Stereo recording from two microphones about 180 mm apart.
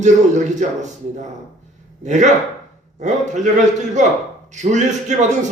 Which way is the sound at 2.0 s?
40° right (ahead or behind).